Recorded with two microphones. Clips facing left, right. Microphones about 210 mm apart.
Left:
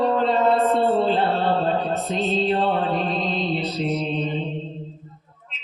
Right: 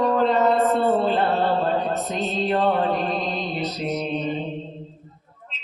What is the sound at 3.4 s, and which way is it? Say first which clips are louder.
Mantra: left 3 dB; 45° right (ahead or behind).